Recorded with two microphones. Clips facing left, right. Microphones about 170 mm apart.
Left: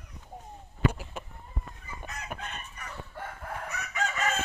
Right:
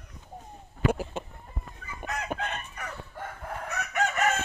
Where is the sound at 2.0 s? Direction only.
90° right.